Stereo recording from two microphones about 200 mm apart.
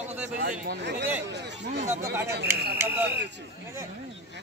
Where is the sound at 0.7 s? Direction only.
60° right (ahead or behind).